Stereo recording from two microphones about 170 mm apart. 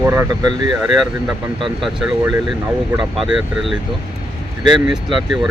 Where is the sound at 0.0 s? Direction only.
15° right (ahead or behind).